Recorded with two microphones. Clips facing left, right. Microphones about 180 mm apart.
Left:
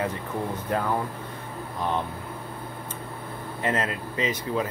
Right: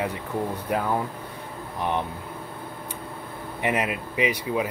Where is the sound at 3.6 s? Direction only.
15° right (ahead or behind).